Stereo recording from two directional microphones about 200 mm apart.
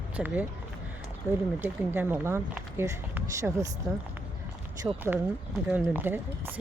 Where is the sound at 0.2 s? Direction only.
Centre (ahead or behind).